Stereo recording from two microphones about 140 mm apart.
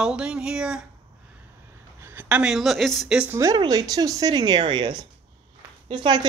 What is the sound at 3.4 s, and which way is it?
Speech, 25° right (ahead or behind).